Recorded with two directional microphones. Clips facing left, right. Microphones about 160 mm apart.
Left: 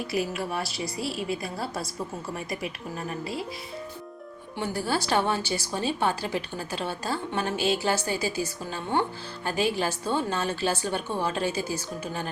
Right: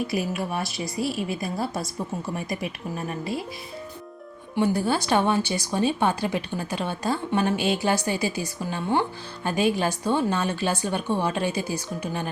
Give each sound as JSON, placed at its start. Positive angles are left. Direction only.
{"t": 1.4, "sound": "a woman's voice", "side_deg": -20}
{"t": 4.5, "sound": "a woman's voice", "side_deg": -20}